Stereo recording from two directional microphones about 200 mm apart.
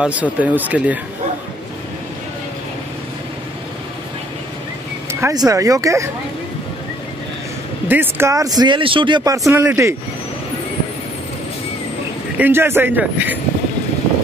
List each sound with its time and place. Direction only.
0.0 s speech: 5° right (ahead or behind)
5.2 s speech: 20° right (ahead or behind)
7.9 s speech: 10° right (ahead or behind)
12.4 s speech: 10° right (ahead or behind)